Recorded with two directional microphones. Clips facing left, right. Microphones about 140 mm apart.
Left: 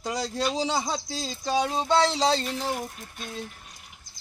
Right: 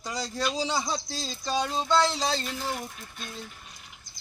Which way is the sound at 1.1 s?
15° left (ahead or behind).